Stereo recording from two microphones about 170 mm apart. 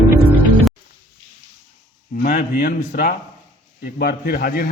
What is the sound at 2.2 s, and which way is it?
A man's voice, 60° left (ahead or behind).